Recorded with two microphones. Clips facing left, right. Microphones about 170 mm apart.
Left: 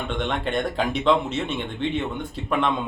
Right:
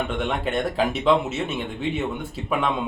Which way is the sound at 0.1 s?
5° right (ahead or behind).